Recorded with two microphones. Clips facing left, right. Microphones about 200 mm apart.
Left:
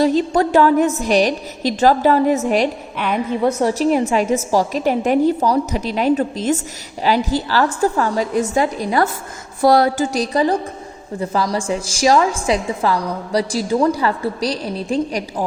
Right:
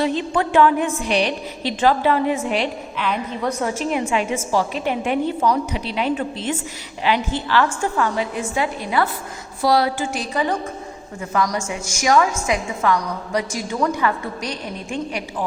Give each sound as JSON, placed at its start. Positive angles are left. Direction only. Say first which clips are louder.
{"t": 0.0, "sound": "a woman's voice", "louder": "left 5 dB", "side_deg": 40}
{"t": 3.4, "sound": "a woman's voice", "louder": "left 7 dB", "side_deg": 35}